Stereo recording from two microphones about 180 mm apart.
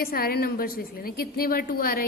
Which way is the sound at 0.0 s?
55° left (ahead or behind).